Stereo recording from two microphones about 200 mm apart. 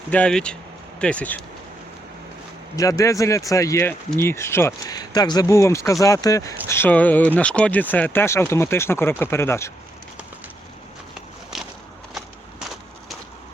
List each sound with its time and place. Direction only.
0.1 s speech: 5° left (ahead or behind)
2.7 s speech: 15° left (ahead or behind)
11.5 s walk: centre (ahead or behind)